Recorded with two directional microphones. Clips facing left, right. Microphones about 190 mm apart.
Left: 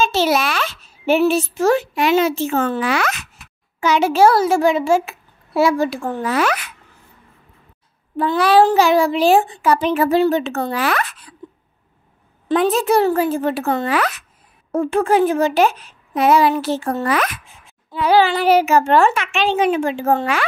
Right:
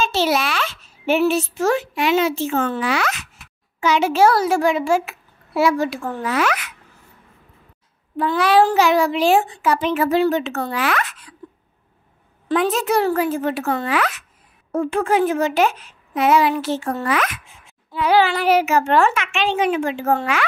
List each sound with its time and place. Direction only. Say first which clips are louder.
0.0 s a child's voice: left 2 dB; 45° left (ahead or behind)
8.2 s a child's voice: left 2 dB; 35° left (ahead or behind)
12.4 s a child's voice: left 3 dB; 35° left (ahead or behind)